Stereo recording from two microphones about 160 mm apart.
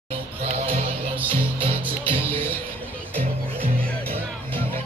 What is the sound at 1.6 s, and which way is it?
Music, 30° right (ahead or behind).